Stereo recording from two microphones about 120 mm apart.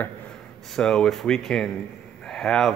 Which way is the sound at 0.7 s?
5° left (ahead or behind).